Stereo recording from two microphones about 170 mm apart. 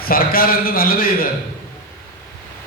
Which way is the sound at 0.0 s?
60° left (ahead or behind).